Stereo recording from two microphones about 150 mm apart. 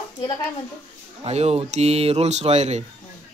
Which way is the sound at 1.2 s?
45° right (ahead or behind).